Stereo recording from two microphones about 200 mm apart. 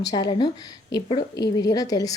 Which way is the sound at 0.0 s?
20° left (ahead or behind).